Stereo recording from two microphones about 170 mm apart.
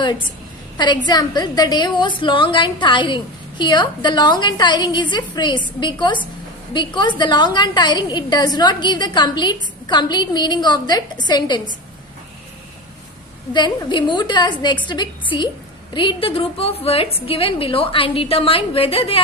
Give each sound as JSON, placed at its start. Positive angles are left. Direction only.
{"t": 0.8, "sound": "a woman's voice", "side_deg": 25}
{"t": 13.5, "sound": "a woman's voice", "side_deg": 25}